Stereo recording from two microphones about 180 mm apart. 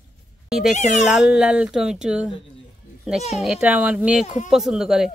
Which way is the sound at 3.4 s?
5° right (ahead or behind).